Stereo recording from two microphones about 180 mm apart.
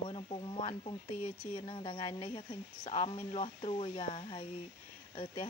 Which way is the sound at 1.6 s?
30° left (ahead or behind).